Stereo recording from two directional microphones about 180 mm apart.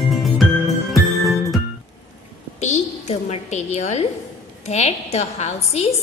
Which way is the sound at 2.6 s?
40° left (ahead or behind).